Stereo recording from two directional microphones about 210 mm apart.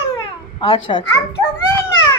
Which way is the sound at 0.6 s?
30° left (ahead or behind).